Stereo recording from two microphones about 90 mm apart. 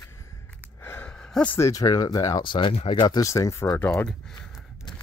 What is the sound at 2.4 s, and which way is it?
Speech, 65° left (ahead or behind).